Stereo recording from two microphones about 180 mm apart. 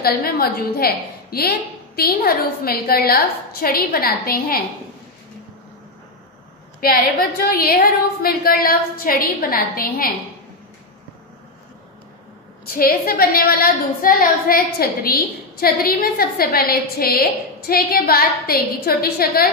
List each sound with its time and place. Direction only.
0.0 s a woman's voice: 55° left (ahead or behind)
6.8 s a woman's voice: 55° left (ahead or behind)
12.6 s a woman's voice: 55° left (ahead or behind)